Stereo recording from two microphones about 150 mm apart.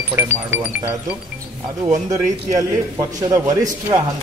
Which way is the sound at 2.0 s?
20° right (ahead or behind).